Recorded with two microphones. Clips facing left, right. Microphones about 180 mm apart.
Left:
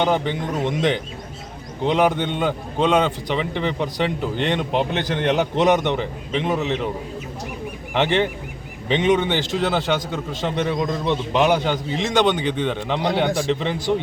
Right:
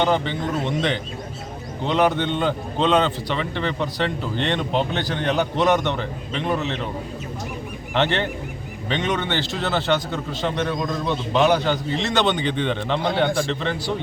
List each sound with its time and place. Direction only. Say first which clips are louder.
0.0 s a man's voice: even; 15° left (ahead or behind)
7.9 s a man's voice: left 2 dB; 15° left (ahead or behind)